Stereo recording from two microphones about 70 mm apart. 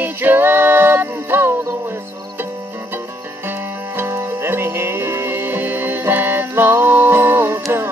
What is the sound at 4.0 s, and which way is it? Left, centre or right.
Music, right.